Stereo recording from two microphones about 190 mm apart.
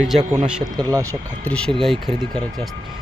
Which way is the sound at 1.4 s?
5° left (ahead or behind).